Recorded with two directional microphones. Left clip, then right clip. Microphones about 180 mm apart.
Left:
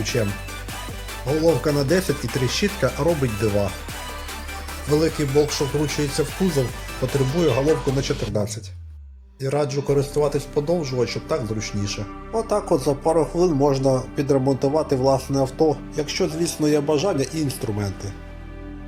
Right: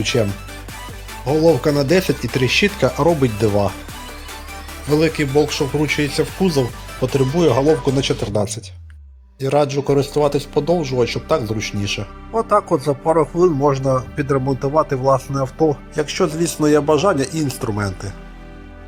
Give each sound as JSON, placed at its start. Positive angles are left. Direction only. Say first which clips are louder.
{"t": 0.0, "sound": "speech", "louder": "right 6 dB", "side_deg": -20}
{"t": 1.3, "sound": "speech", "louder": "right 5 dB", "side_deg": -20}
{"t": 4.9, "sound": "speech", "louder": "right 4 dB", "side_deg": -15}